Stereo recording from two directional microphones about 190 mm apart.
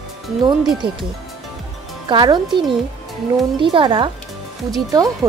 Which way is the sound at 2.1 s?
25° right (ahead or behind).